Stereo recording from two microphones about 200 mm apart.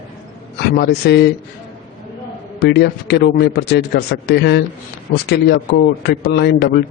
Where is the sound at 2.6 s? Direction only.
55° left (ahead or behind).